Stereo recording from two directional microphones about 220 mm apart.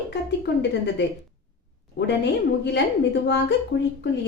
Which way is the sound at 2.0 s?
50° left (ahead or behind).